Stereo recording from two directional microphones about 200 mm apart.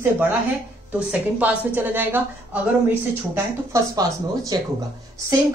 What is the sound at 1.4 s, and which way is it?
A woman's voice, 10° right (ahead or behind).